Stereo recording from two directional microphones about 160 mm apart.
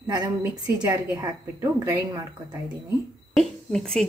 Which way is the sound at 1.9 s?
25° right (ahead or behind).